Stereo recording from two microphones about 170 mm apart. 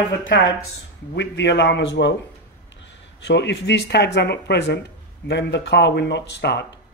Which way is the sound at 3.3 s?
90° left.